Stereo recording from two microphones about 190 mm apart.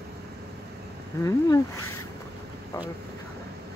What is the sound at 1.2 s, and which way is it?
Speech, 15° left (ahead or behind).